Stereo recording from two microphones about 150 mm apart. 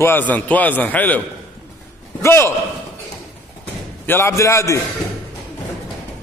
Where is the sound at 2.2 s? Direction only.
15° left (ahead or behind).